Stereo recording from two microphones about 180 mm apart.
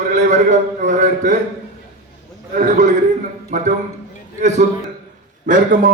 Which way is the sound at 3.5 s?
45° right (ahead or behind).